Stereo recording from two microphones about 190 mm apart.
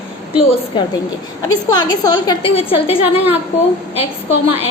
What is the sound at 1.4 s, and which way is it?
A woman's voice, 20° left (ahead or behind).